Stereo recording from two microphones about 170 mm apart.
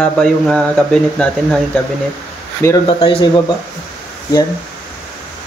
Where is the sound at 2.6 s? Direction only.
15° left (ahead or behind).